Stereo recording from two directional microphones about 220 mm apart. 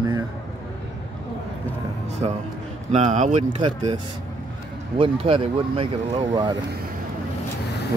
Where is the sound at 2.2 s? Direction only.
25° right (ahead or behind).